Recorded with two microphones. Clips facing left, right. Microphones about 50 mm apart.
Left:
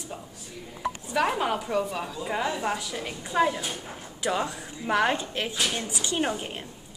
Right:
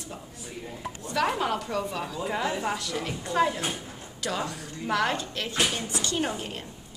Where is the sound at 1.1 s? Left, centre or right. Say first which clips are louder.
Even; centre.